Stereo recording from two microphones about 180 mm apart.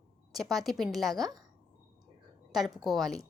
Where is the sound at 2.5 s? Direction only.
Centre (ahead or behind).